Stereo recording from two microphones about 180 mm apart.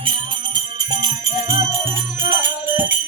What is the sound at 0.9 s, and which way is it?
Jingle bell, 20° right (ahead or behind).